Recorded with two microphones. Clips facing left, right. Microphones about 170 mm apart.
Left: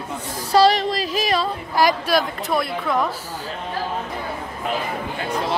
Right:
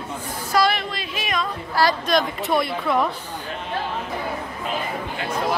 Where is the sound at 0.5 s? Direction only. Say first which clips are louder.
Left 5 dB; 35° left (ahead or behind).